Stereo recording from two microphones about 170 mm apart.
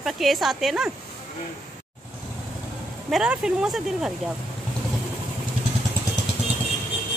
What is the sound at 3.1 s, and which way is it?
Speech, 5° right (ahead or behind).